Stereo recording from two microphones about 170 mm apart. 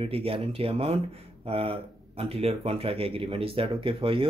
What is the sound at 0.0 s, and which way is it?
Speech, 35° right (ahead or behind).